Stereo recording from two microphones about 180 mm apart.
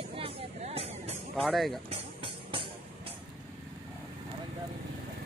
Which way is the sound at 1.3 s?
Centre (ahead or behind).